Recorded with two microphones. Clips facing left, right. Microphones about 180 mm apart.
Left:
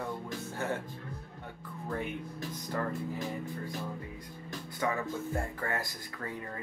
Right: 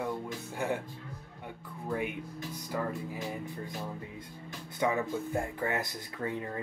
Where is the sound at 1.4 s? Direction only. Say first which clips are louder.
Right 4 dB; 15° right (ahead or behind).